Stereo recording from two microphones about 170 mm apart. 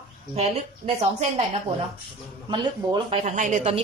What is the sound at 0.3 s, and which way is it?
Speech, 35° right (ahead or behind).